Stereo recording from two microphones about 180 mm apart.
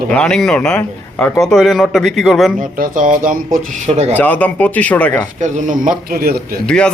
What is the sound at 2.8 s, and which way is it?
Speech, 50° right (ahead or behind).